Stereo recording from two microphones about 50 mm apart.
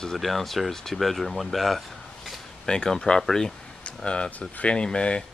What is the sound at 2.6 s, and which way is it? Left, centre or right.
Speech, centre.